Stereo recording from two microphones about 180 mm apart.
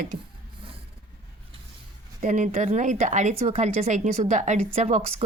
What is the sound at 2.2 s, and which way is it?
A woman's voice, 45° right (ahead or behind).